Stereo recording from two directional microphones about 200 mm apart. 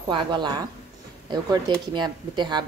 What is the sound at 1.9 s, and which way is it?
Speech, 20° right (ahead or behind).